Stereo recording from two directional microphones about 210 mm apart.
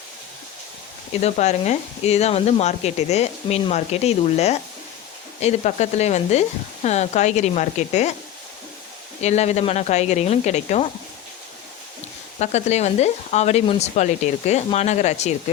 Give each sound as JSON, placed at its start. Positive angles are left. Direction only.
{"t": 1.1, "sound": "speech", "side_deg": 30}
{"t": 9.2, "sound": "speech", "side_deg": 30}
{"t": 12.4, "sound": "speech", "side_deg": 30}